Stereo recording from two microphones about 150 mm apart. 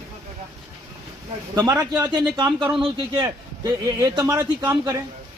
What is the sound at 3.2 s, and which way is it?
Speech, 25° right (ahead or behind).